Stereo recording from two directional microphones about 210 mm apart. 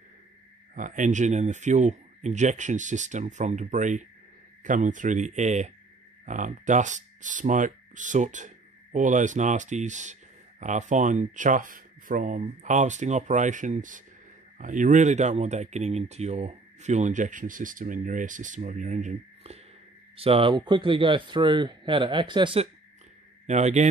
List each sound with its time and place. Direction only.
0.7 s a man's voice: 40° right (ahead or behind)